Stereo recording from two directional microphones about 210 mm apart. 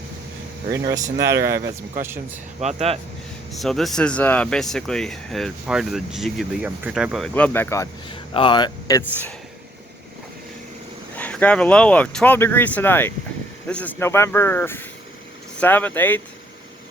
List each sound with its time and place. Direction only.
1.4 s speech: 50° right (ahead or behind)
2.0 s speech: 10° right (ahead or behind)
2.6 s speech: 30° right (ahead or behind)
3.5 s speech: centre (ahead or behind)
8.1 s speech: 25° left (ahead or behind)
11.2 s speech: 5° left (ahead or behind)